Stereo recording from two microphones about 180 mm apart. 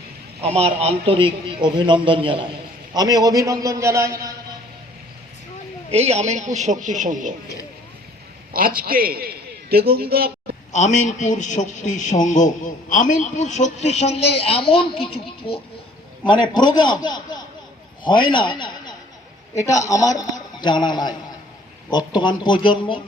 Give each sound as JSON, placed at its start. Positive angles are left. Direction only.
{"t": 0.4, "sound": "a man's voice", "side_deg": -35}
{"t": 5.9, "sound": "a man's voice", "side_deg": -35}
{"t": 8.5, "sound": "a man's voice", "side_deg": -55}
{"t": 10.7, "sound": "a man's voice", "side_deg": 40}
{"t": 16.2, "sound": "a man's voice", "side_deg": 25}